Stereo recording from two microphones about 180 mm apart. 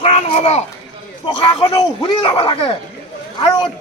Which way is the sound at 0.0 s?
35° left (ahead or behind).